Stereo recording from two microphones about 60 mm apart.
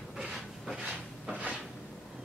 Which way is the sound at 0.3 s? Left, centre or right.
Centre.